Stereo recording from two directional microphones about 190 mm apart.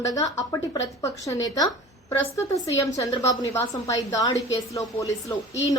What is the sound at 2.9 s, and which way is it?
A woman's voice, 20° left (ahead or behind).